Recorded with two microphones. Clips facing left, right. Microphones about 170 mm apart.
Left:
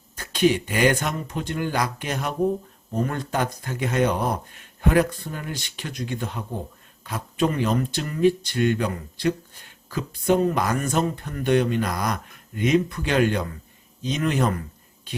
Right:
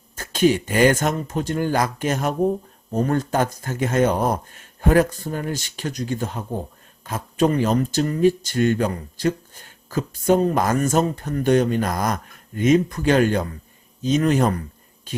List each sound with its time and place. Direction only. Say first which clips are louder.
0.2 s a man's voice: right 2 dB; 45° right (ahead or behind)